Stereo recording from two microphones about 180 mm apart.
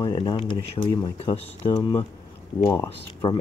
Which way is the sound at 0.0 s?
25° left (ahead or behind).